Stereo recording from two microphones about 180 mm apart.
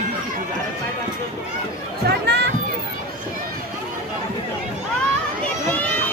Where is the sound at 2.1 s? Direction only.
65° right (ahead or behind).